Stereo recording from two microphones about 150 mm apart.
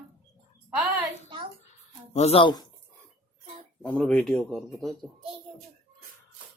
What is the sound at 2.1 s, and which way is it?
Speech, 45° left (ahead or behind).